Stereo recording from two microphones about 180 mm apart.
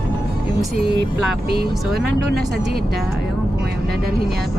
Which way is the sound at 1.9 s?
60° right (ahead or behind).